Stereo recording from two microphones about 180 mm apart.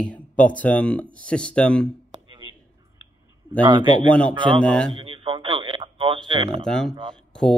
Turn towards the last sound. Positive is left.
turn(degrees=5)  # may be behind; listen again after turning